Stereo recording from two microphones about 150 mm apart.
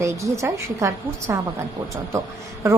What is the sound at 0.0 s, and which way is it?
A woman's voice, 20° right (ahead or behind).